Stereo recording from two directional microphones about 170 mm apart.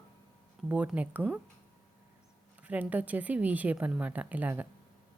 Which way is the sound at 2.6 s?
10° right (ahead or behind).